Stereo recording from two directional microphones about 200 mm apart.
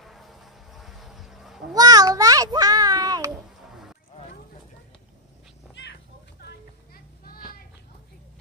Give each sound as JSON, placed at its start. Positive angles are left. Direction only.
{"t": 0.0, "sound": "a sound", "side_deg": 0}
{"t": 1.8, "sound": "child singing", "side_deg": -20}
{"t": 6.4, "sound": "music", "side_deg": 50}